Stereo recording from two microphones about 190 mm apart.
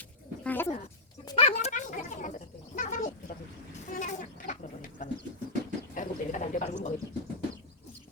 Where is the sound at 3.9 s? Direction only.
40° left (ahead or behind).